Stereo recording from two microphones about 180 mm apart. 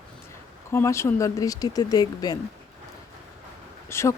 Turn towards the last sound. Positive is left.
turn(degrees=15)  # may be behind; listen again after turning